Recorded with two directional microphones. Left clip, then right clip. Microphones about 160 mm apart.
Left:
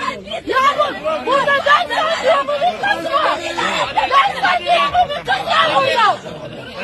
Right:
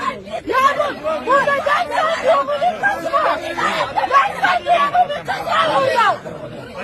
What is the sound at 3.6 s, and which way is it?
Speech, 30° left (ahead or behind).